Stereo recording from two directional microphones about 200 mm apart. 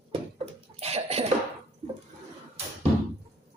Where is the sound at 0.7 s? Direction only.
30° right (ahead or behind).